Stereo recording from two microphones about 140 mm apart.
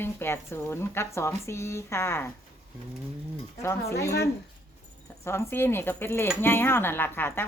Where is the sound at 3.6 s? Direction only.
20° left (ahead or behind).